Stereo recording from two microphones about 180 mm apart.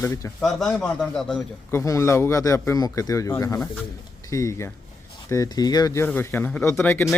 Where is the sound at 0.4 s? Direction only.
5° left (ahead or behind).